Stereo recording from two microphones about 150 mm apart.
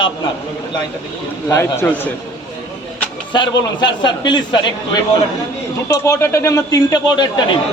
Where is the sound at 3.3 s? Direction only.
30° left (ahead or behind).